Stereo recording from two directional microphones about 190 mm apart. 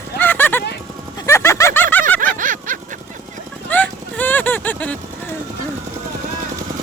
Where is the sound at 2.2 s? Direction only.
45° right (ahead or behind).